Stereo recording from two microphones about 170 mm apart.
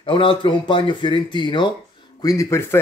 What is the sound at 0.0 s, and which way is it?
A man's voice, 30° left (ahead or behind).